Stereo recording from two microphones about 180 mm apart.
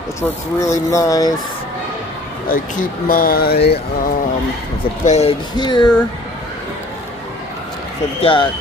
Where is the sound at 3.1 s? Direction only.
55° left (ahead or behind).